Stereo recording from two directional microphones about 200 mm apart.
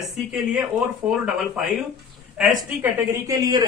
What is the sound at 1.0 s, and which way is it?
Speech, 5° right (ahead or behind).